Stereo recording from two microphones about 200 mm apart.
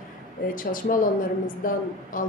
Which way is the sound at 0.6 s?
45° left (ahead or behind).